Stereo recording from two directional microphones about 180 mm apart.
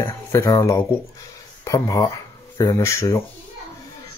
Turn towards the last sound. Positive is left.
turn(degrees=15)  # may be behind; listen again after turning